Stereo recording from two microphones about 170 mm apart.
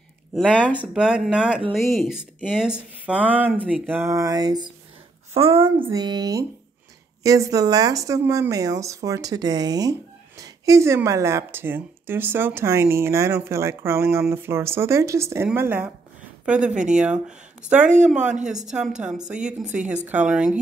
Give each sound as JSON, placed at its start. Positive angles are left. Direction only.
{"t": 0.3, "sound": "a woman's voice", "side_deg": 0}
{"t": 3.5, "sound": "speech", "side_deg": 5}
{"t": 3.8, "sound": "speech", "side_deg": -10}
{"t": 5.3, "sound": "a woman's voice", "side_deg": -35}
{"t": 17.8, "sound": "speech", "side_deg": -45}
{"t": 18.7, "sound": "speech", "side_deg": -5}
{"t": 19.6, "sound": "speech", "side_deg": -45}
{"t": 20.1, "sound": "speech", "side_deg": -5}